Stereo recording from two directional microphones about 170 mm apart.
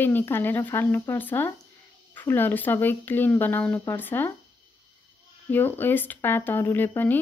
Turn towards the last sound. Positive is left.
turn(degrees=10)  # may be behind; listen again after turning